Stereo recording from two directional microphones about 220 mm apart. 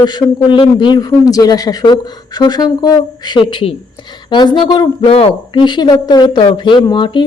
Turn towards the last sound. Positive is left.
turn(degrees=20)  # may be behind; listen again after turning